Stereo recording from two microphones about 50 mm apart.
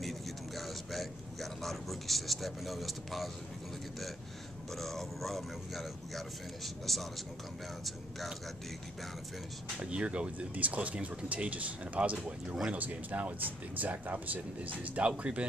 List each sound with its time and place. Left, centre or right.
0.6 s a man's voice: centre
4.7 s speech: centre
9.8 s speech: right